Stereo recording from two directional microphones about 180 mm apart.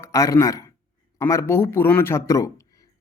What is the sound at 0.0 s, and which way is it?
Speech, 15° left (ahead or behind).